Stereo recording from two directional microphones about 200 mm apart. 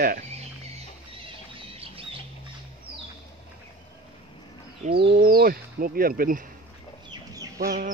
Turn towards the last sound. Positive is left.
turn(degrees=-15)  # may be behind; listen again after turning